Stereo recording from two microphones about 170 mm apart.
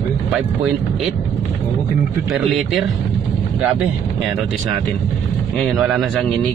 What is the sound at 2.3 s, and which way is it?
Speech, centre (ahead or behind).